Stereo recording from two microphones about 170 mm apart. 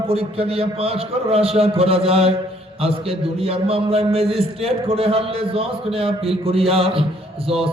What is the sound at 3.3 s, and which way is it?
A man's voice, 35° right (ahead or behind).